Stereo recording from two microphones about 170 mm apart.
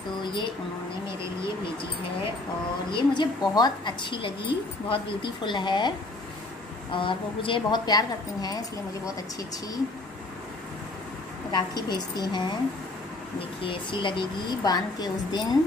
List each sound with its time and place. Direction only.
2.9 s a woman's voice: 25° left (ahead or behind)
11.5 s a woman's voice: 25° left (ahead or behind)
13.6 s a woman's voice: 30° left (ahead or behind)